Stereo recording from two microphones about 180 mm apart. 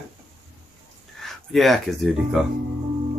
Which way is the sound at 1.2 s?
Centre (ahead or behind).